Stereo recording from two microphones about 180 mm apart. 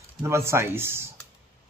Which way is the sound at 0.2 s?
15° right (ahead or behind).